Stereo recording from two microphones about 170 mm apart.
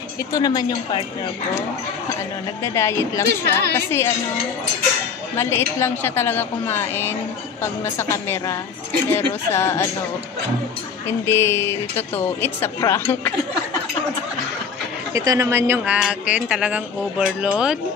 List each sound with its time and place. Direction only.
0.3 s a woman's voice: 25° left (ahead or behind)
2.6 s a woman's voice: 15° left (ahead or behind)
5.3 s a woman's voice: 15° left (ahead or behind)
11.1 s a woman's voice: 15° left (ahead or behind)
15.1 s speech: 20° right (ahead or behind)